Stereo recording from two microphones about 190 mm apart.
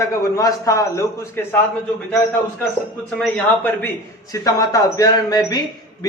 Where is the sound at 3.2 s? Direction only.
10° left (ahead or behind).